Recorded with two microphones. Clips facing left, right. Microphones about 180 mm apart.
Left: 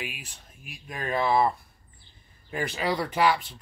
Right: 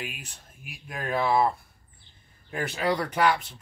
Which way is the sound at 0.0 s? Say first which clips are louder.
Even; centre (ahead or behind).